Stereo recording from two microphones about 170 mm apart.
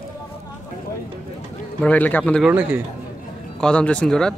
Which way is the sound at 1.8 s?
10° left (ahead or behind).